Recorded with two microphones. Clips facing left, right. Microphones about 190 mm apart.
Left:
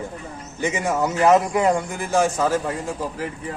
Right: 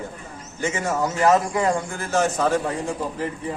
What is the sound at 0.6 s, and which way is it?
A man's voice, 15° left (ahead or behind).